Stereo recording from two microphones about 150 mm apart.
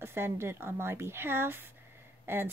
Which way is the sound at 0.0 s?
15° right (ahead or behind).